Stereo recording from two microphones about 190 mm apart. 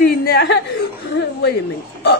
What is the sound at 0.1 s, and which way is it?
Chuckle, 55° left (ahead or behind).